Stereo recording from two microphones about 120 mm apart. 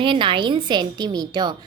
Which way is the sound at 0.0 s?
45° right (ahead or behind).